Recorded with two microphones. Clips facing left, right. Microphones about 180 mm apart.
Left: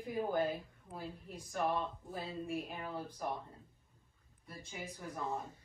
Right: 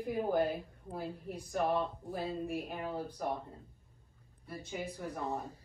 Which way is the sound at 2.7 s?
30° right (ahead or behind).